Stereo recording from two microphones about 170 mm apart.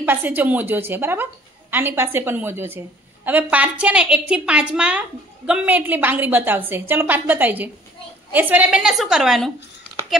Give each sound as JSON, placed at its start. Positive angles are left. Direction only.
{"t": 0.0, "sound": "a woman's voice", "side_deg": -10}